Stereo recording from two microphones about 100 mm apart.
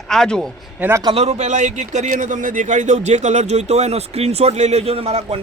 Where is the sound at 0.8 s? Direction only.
25° right (ahead or behind).